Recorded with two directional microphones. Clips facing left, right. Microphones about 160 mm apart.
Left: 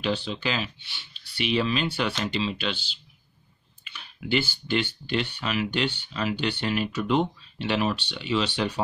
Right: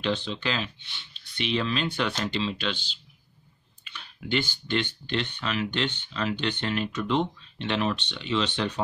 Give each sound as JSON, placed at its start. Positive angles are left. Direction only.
{"t": 0.0, "sound": "speech", "side_deg": 5}